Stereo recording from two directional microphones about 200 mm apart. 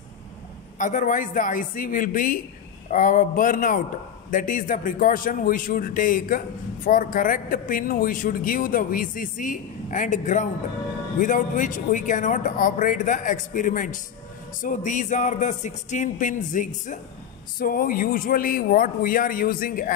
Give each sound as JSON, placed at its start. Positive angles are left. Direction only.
{"t": 0.7, "sound": "a man's voice", "side_deg": 40}